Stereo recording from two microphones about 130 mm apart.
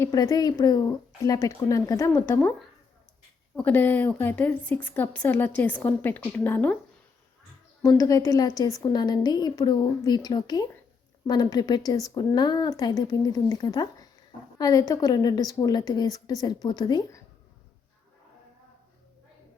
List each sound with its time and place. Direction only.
0.0 s speech: 25° left (ahead or behind)
3.5 s a woman's voice: 15° left (ahead or behind)
7.8 s a woman's voice: 25° left (ahead or behind)